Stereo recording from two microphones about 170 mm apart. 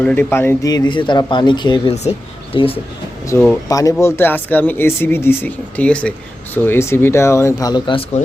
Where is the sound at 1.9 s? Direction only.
40° left (ahead or behind).